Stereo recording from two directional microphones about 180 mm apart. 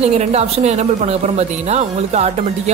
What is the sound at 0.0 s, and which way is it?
Speech, 35° right (ahead or behind).